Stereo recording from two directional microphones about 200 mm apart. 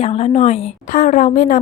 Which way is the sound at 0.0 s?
30° left (ahead or behind).